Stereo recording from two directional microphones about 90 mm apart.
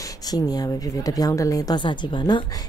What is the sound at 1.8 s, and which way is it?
Speech, 60° left (ahead or behind).